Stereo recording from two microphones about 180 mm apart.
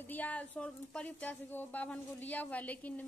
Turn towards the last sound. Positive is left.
turn(degrees=10)  # may be behind; listen again after turning